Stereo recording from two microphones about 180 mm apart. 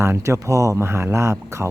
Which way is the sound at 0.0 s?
15° right (ahead or behind).